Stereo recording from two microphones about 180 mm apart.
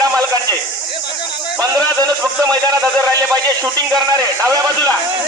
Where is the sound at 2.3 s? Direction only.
20° right (ahead or behind).